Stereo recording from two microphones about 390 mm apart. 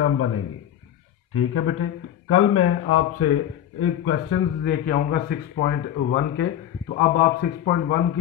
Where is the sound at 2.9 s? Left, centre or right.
Left.